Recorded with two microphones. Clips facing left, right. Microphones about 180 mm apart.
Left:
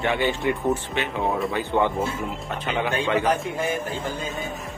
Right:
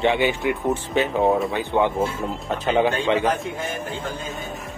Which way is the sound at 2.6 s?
35° right (ahead or behind).